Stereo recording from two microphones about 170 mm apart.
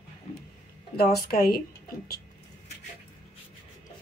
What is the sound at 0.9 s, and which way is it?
Speech, 65° left (ahead or behind).